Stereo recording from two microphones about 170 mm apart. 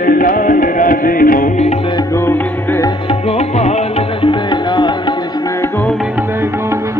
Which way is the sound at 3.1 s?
35° left (ahead or behind).